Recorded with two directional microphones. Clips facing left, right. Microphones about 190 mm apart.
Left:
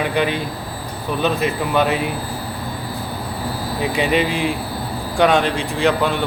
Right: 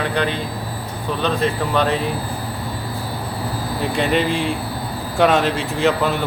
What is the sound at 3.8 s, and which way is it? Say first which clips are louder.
Speech: left 1 dB; 5° left (ahead or behind).